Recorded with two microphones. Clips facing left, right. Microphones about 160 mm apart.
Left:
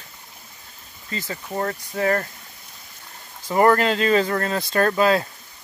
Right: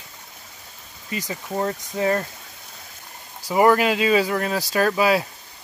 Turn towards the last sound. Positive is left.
turn(degrees=-10)  # may be behind; listen again after turning